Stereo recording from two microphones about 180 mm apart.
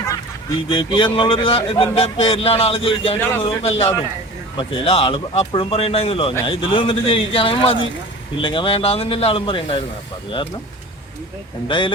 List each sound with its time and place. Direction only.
0.7 s speech: 25° left (ahead or behind)
3.2 s a man's voice: 10° left (ahead or behind)
3.4 s a man's voice: 35° left (ahead or behind)